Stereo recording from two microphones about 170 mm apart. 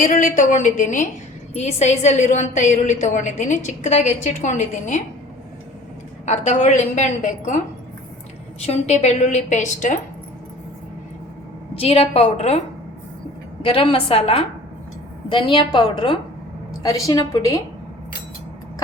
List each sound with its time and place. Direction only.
0.0 s a woman's voice: 50° left (ahead or behind)
6.2 s a woman's voice: 45° left (ahead or behind)
8.6 s a woman's voice: 40° left (ahead or behind)
11.7 s a woman's voice: 35° left (ahead or behind)
13.6 s a woman's voice: 30° left (ahead or behind)